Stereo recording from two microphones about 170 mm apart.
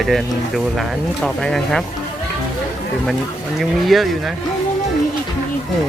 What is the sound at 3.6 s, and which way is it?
Speech, centre (ahead or behind).